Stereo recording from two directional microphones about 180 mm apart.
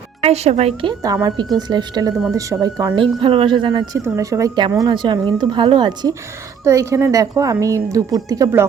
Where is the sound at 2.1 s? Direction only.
Centre (ahead or behind).